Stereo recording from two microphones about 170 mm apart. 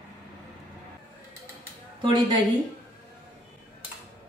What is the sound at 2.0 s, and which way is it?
Speech, 30° right (ahead or behind).